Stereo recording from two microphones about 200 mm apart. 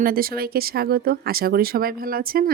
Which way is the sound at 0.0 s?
45° right (ahead or behind).